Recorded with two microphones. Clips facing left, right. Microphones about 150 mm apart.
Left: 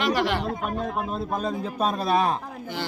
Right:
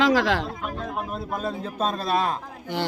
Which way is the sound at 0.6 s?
25° left (ahead or behind).